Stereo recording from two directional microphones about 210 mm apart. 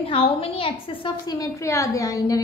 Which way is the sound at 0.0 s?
25° left (ahead or behind).